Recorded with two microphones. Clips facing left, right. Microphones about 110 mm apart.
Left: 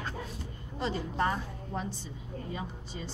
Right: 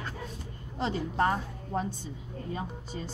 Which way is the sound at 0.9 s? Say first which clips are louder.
Right 3 dB; 60° right (ahead or behind).